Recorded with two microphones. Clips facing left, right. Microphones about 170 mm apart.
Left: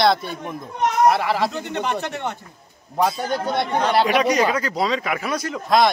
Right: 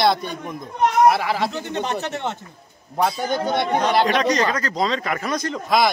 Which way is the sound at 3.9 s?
10° left (ahead or behind).